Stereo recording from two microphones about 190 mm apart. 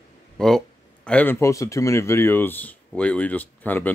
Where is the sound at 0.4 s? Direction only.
5° left (ahead or behind).